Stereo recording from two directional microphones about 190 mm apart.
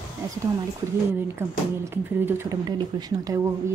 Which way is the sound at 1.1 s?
10° right (ahead or behind).